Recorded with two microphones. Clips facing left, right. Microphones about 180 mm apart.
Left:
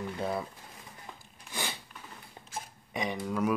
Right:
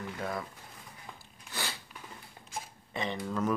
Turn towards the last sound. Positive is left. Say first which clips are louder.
# left 2 dB
turn(degrees=10)  # may be behind; listen again after turning